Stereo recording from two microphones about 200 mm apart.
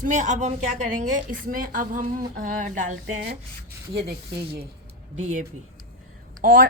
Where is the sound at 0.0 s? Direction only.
40° right (ahead or behind).